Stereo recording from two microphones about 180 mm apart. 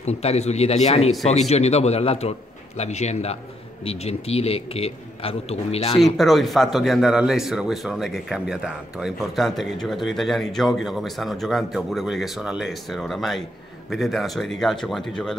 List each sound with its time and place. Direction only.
0.0 s a man's voice: 35° left (ahead or behind)
6.1 s a man's voice: centre (ahead or behind)